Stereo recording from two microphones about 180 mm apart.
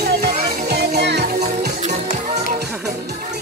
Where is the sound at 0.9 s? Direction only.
65° right (ahead or behind).